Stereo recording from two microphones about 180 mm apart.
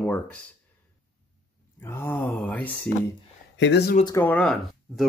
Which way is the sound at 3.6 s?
65° left (ahead or behind).